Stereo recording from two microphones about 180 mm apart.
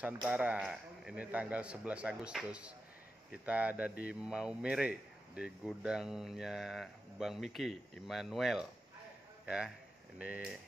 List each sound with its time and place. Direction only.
0.0 s a man's voice: 10° right (ahead or behind)
10.1 s a man's voice: 5° right (ahead or behind)